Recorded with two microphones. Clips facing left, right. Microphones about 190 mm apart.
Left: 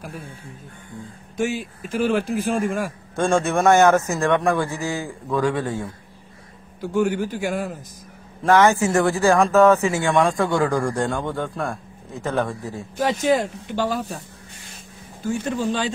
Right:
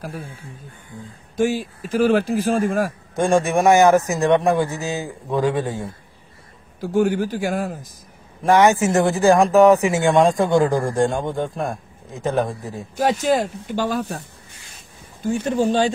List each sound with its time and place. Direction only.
1.3 s speech: 35° right (ahead or behind)
3.2 s speech: 15° right (ahead or behind)
7.0 s speech: 40° right (ahead or behind)
7.4 s speech: 50° right (ahead or behind)
8.5 s speech: 15° right (ahead or behind)
12.9 s speech: 45° right (ahead or behind)
15.4 s speech: 35° right (ahead or behind)